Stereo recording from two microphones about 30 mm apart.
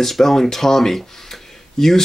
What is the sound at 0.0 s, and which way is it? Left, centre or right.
Speech, centre.